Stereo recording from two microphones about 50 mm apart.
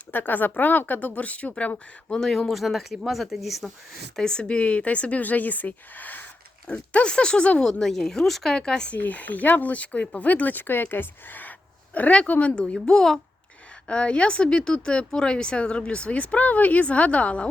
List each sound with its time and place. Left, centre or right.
0.1 s speech: left
2.0 s speech: centre
2.5 s speech: centre
4.2 s speech: centre; by 6.2 s left
6.7 s speech: left
7.6 s speech: centre
8.9 s speech: left
12.7 s speech: centre
13.8 s speech: left